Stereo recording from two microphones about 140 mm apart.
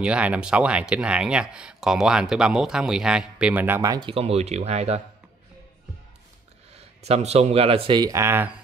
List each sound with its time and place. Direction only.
0.0 s speech: 10° right (ahead or behind)
4.0 s speech: 45° right (ahead or behind)
6.7 s speech: 50° right (ahead or behind)
8.0 s speech: 20° right (ahead or behind)